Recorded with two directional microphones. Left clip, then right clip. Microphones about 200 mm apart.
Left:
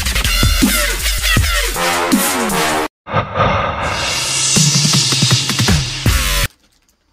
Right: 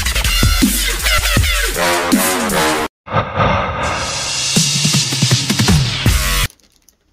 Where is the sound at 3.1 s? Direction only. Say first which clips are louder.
Even; centre (ahead or behind).